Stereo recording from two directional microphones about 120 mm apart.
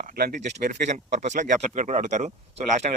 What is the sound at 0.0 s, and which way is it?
Speech, 90° right.